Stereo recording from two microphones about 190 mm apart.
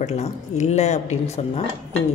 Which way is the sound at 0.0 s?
35° left (ahead or behind).